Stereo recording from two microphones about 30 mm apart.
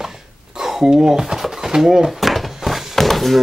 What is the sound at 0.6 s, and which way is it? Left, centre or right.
Speech, centre.